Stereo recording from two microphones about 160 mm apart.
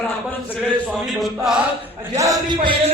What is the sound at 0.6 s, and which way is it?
Speech, 5° left (ahead or behind).